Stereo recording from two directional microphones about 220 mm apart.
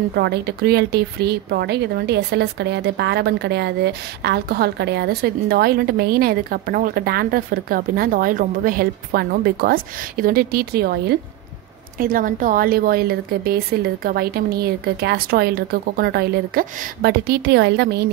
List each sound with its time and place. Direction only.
0.1 s speech: 50° right (ahead or behind)